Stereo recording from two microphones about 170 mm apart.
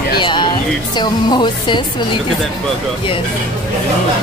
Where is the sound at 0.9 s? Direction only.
25° left (ahead or behind).